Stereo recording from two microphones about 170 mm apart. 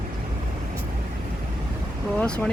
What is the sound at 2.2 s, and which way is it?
Speech, 5° left (ahead or behind).